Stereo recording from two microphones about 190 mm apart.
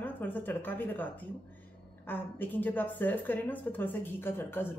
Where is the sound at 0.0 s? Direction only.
10° left (ahead or behind).